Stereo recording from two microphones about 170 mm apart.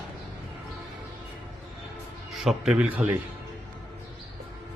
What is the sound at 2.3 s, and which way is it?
Speech, centre (ahead or behind).